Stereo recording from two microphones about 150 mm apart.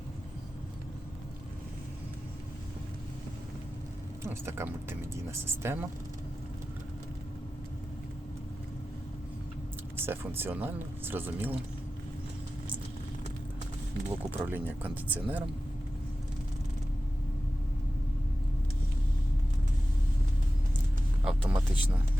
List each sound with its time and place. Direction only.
4.2 s speech: 15° right (ahead or behind)
10.1 s speech: 15° right (ahead or behind)
14.1 s speech: 10° right (ahead or behind)
21.2 s a sound: 10° right (ahead or behind)